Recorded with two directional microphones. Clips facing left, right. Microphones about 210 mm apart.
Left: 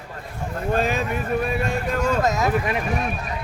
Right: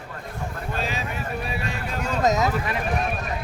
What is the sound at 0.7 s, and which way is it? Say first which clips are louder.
Speech: left 8 dB; 50° left (ahead or behind).